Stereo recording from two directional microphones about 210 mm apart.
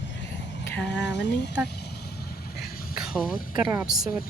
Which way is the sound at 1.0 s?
55° left (ahead or behind).